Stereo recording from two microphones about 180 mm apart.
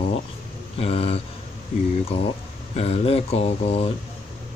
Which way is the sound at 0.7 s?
35° left (ahead or behind).